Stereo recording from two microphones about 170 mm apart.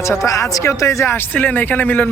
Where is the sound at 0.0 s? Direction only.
20° left (ahead or behind).